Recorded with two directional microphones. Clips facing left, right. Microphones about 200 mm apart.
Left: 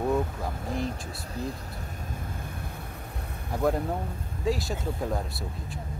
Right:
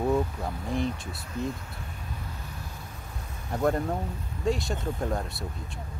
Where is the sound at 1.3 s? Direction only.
35° left (ahead or behind).